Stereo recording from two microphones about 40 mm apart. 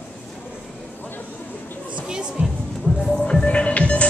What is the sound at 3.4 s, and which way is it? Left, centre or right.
Throbbing, left.